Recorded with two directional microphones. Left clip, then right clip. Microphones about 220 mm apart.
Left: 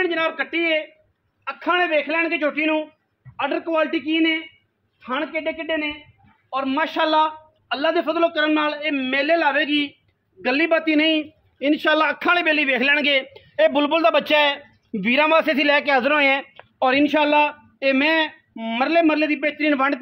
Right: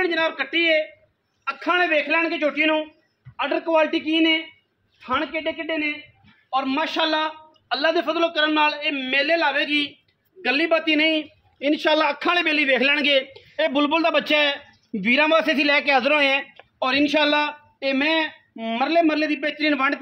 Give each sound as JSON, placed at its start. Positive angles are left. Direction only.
{"t": 0.0, "sound": "a man's voice", "side_deg": 25}